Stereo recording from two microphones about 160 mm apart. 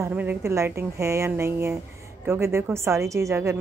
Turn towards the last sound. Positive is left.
turn(degrees=-15)  # may be behind; listen again after turning